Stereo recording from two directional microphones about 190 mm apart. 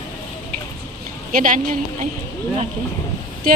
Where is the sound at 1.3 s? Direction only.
45° right (ahead or behind).